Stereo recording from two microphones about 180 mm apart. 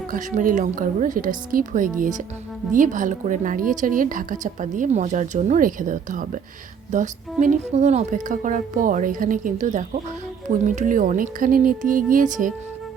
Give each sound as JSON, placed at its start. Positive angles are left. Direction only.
{"t": 0.1, "sound": "a woman's voice", "side_deg": -45}